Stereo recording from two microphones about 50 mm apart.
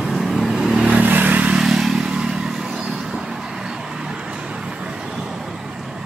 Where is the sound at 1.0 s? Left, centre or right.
Right.